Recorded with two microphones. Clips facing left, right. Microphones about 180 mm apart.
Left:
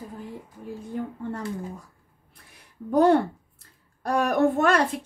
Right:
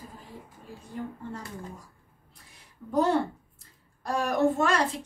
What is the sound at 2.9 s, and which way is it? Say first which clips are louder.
A woman's voice: left 6 dB; 60° left (ahead or behind).